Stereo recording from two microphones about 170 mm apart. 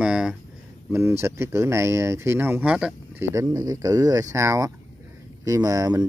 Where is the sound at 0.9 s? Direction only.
15° right (ahead or behind).